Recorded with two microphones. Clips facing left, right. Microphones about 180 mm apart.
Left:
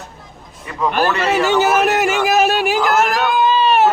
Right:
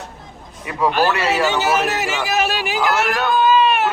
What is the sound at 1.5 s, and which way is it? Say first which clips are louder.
Speech: left 5 dB; 55° left (ahead or behind).